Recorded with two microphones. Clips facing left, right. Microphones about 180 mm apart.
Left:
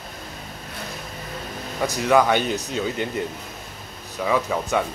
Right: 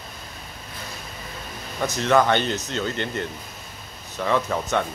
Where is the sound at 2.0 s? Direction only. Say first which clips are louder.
Left 1 dB; 10° left (ahead or behind).